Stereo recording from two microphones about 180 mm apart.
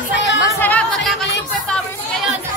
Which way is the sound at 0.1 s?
80° left.